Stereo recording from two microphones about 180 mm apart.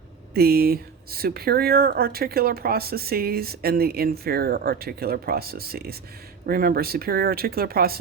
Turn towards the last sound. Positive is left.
turn(degrees=-55)  # may be behind; listen again after turning